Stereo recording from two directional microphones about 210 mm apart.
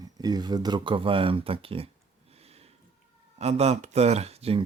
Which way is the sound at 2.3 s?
30° right (ahead or behind).